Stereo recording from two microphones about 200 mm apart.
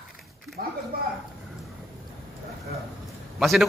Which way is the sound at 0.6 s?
45° right (ahead or behind).